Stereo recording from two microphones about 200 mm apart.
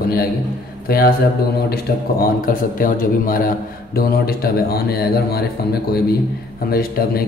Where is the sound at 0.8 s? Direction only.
50° left (ahead or behind).